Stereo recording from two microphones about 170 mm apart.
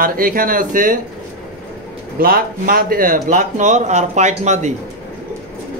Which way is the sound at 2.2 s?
60° right (ahead or behind).